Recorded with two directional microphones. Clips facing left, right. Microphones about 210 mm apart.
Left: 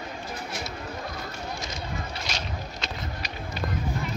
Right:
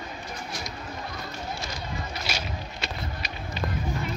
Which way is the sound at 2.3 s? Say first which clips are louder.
Right 2 dB; 5° right (ahead or behind).